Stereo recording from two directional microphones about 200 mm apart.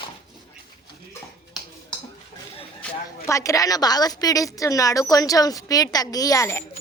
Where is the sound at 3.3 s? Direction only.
15° left (ahead or behind).